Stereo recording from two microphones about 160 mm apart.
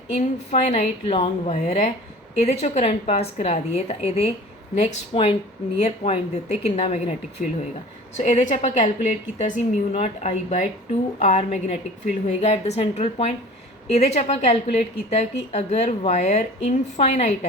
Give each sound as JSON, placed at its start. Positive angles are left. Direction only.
{"t": 0.1, "sound": "a woman's voice", "side_deg": 50}